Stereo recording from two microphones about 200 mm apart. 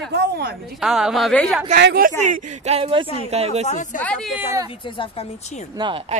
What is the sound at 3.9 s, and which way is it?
Speech, 5° left (ahead or behind).